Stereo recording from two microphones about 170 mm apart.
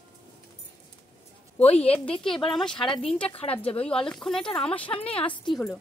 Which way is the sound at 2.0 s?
5° left (ahead or behind).